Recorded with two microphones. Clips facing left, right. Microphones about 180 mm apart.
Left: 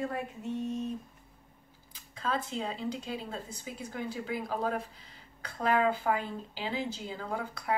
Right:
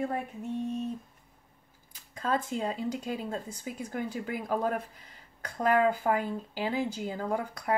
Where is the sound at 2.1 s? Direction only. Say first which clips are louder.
Right 3 dB; 45° right (ahead or behind).